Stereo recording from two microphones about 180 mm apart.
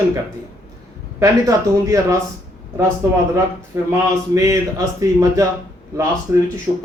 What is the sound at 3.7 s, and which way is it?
Speech, 15° right (ahead or behind).